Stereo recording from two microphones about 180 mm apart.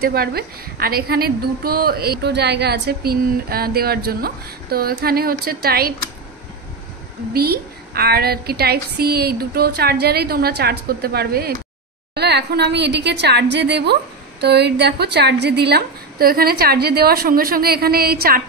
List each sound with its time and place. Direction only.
0.0 s a woman's voice: 60° right (ahead or behind)
7.3 s a woman's voice: 60° right (ahead or behind)